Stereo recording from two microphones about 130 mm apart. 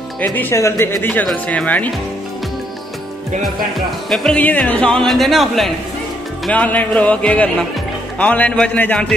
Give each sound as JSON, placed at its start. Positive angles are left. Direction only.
{"t": 0.2, "sound": "speech", "side_deg": 15}
{"t": 4.1, "sound": "music", "side_deg": 0}
{"t": 6.5, "sound": "speech", "side_deg": 10}